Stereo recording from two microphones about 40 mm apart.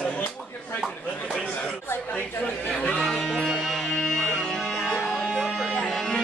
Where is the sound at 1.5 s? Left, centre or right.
Left.